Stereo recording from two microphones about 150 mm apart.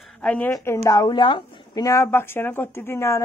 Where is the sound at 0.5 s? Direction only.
20° left (ahead or behind).